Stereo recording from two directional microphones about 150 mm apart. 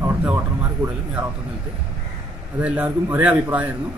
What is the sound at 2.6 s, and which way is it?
A man's voice, 10° right (ahead or behind).